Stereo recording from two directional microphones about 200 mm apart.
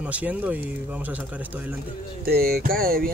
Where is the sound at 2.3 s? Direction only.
50° right (ahead or behind).